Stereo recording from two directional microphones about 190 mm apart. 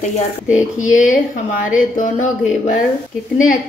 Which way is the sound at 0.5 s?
40° left (ahead or behind).